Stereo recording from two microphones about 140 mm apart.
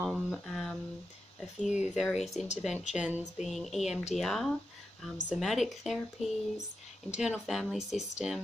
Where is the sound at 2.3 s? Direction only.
55° left (ahead or behind).